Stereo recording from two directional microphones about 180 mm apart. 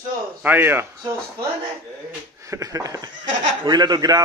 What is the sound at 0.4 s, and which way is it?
Speech, 10° right (ahead or behind).